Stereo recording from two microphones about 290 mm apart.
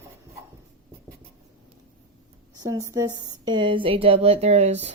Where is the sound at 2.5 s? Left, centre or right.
Centre.